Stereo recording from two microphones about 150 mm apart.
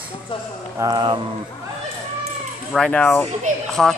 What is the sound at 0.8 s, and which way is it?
Speech, 30° right (ahead or behind).